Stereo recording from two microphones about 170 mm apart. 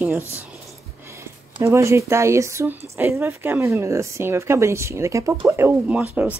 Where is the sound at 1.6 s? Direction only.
15° right (ahead or behind).